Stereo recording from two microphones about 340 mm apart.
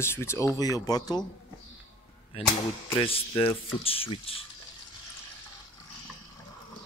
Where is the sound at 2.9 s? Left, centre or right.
Centre.